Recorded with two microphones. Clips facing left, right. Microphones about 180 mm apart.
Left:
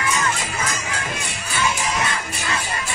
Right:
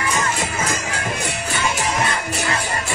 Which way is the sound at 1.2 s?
65° right (ahead or behind).